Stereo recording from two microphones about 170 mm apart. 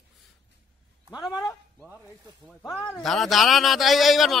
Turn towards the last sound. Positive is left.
turn(degrees=0)  # may be behind; listen again after turning